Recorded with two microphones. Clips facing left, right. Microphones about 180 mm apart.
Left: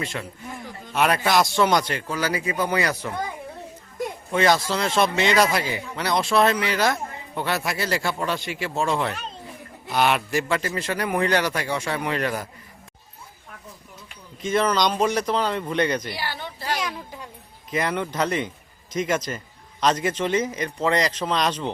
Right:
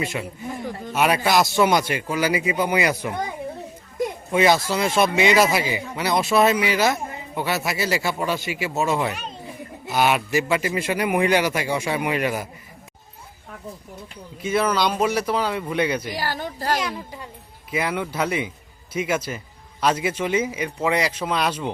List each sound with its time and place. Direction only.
0.0 s speech: 10° right (ahead or behind)
4.3 s speech: 10° right (ahead or behind)
14.4 s speech: 10° right (ahead or behind)
16.1 s speech: 40° right (ahead or behind)
16.8 s speech: 10° right (ahead or behind)